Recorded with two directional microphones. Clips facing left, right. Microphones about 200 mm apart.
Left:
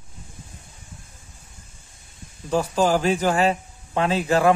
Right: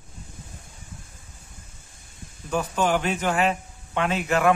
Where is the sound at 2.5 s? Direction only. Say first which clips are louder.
Left 3 dB; 35° left (ahead or behind).